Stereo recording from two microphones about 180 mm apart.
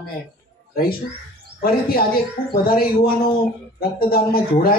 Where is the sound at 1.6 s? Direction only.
55° left (ahead or behind).